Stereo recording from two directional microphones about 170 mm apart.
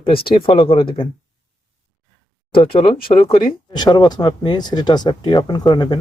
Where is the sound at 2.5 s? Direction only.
30° left (ahead or behind).